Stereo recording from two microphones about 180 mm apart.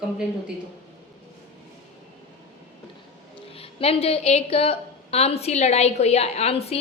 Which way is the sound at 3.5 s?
35° left (ahead or behind).